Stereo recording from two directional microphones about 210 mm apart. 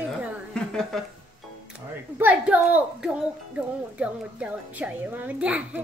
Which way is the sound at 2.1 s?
5° right (ahead or behind).